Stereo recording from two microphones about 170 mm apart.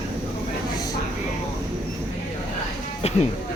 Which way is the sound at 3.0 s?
40° left (ahead or behind).